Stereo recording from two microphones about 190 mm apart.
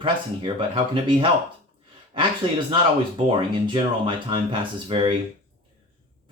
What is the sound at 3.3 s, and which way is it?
Speech, 25° right (ahead or behind).